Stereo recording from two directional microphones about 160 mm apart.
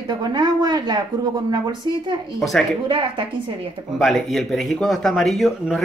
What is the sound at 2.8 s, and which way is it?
Speech, 30° right (ahead or behind).